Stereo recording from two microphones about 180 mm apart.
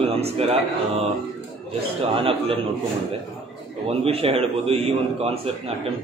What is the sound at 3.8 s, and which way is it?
A man's voice, 35° right (ahead or behind).